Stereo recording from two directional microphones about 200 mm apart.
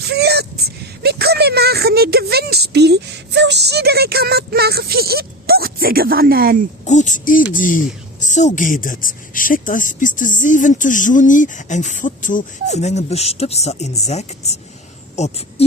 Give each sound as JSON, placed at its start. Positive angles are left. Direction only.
{"t": 0.1, "sound": "speech", "side_deg": -55}
{"t": 6.8, "sound": "a woman's voice", "side_deg": 35}